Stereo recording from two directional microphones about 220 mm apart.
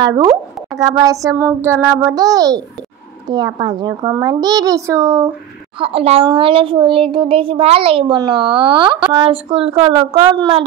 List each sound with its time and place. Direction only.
0.0 s a woman's voice: 20° right (ahead or behind)
5.8 s a woman's voice: 25° right (ahead or behind)